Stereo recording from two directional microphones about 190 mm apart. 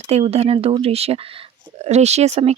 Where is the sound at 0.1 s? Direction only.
35° right (ahead or behind).